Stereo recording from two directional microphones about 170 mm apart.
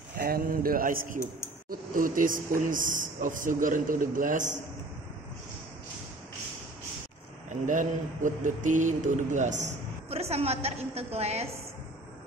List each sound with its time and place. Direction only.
0.2 s speech: 60° right (ahead or behind)
1.7 s mantra: 55° right (ahead or behind)
7.4 s mantra: 50° right (ahead or behind)